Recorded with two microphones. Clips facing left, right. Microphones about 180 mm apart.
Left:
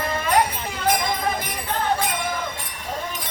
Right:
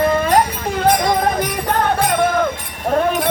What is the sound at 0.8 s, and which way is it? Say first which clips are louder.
Music: right 7 dB; 65° right (ahead or behind).